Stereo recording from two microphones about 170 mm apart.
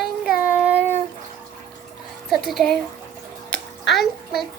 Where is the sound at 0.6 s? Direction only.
10° right (ahead or behind).